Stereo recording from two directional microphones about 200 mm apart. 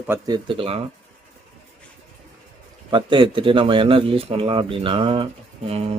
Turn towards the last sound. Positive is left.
turn(degrees=-30)  # may be behind; listen again after turning